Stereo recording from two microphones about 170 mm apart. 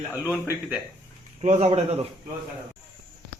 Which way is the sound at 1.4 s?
40° right (ahead or behind).